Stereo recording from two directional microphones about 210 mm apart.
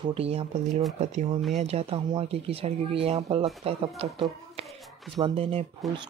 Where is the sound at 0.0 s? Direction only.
25° right (ahead or behind).